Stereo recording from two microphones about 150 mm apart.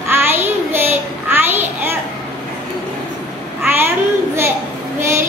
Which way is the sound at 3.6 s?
15° right (ahead or behind).